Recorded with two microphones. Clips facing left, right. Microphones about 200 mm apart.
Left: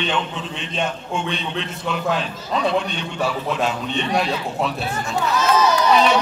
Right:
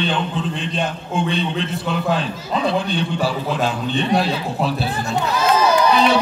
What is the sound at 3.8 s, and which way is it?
Speech, centre (ahead or behind).